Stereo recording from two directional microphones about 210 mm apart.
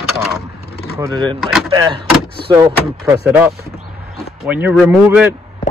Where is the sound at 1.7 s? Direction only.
20° right (ahead or behind).